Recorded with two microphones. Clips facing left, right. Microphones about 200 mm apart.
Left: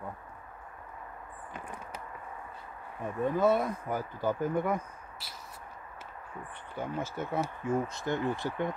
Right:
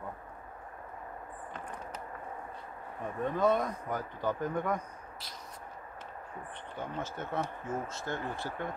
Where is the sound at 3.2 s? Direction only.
5° left (ahead or behind).